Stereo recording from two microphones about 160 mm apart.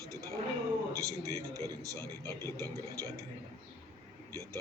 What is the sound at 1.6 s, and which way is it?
Speech, 20° left (ahead or behind).